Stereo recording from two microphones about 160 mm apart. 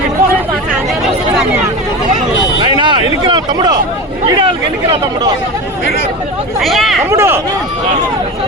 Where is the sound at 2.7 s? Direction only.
30° right (ahead or behind).